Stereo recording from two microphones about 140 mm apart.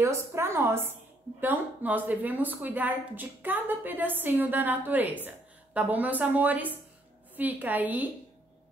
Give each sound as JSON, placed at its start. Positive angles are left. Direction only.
{"t": 0.0, "sound": "speech", "side_deg": -20}